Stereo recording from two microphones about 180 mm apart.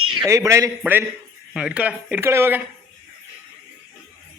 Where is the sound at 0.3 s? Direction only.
15° right (ahead or behind).